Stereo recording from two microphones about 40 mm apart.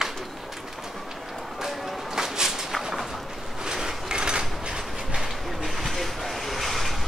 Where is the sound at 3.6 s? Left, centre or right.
Centre.